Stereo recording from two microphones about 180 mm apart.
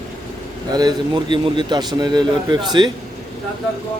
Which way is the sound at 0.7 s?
20° right (ahead or behind).